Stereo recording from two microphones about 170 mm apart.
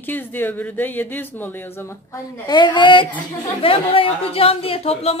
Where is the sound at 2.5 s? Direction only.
30° left (ahead or behind).